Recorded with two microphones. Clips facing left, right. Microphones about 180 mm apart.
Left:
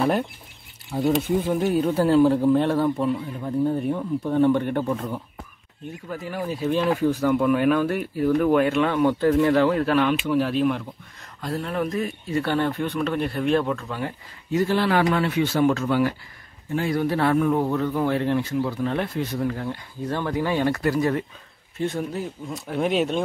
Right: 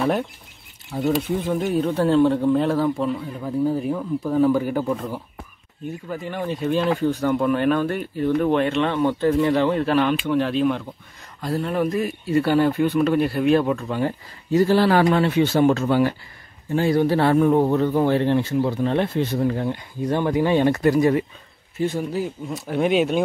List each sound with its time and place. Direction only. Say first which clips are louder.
0.9 s speech: left 1 dB; 10° left (ahead or behind)
13.7 s speech: right 6 dB; 20° right (ahead or behind)
14.0 s speech: right 6 dB; 35° right (ahead or behind); by 21.3 s 15° right (ahead or behind)
21.7 s speech: right 3 dB; 5° right (ahead or behind)